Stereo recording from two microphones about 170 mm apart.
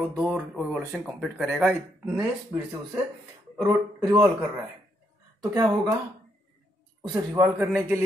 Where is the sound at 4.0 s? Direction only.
20° right (ahead or behind).